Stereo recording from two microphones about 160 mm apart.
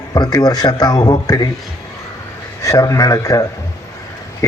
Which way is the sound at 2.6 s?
20° left (ahead or behind).